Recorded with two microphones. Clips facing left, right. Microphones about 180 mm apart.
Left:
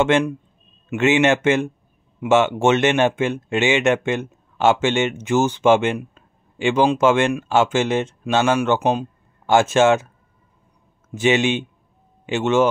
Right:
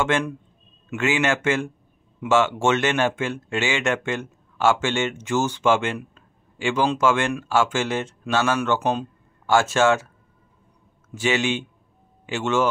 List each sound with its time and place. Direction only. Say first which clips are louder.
0.0 s speech: left 5 dB; 20° left (ahead or behind)
11.1 s speech: left 5 dB; 20° left (ahead or behind)